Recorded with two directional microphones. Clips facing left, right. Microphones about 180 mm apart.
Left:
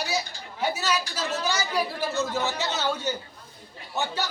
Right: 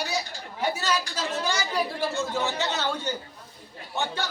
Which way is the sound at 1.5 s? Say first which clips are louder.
Left 1 dB; 5° left (ahead or behind).